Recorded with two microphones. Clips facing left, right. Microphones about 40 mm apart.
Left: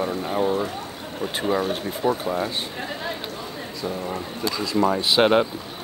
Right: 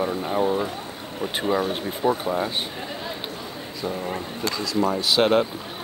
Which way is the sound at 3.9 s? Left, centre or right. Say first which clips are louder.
Even; centre.